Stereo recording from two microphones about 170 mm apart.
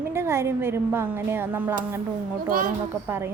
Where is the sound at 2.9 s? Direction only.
15° right (ahead or behind).